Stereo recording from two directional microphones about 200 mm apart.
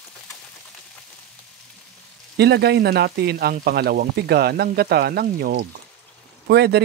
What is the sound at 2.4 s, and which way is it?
Speech, 55° right (ahead or behind).